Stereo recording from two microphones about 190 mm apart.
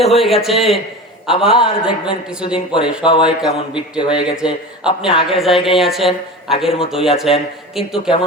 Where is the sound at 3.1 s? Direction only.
25° left (ahead or behind).